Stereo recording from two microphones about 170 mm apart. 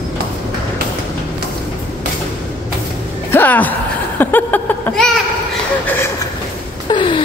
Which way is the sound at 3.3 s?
10° left (ahead or behind).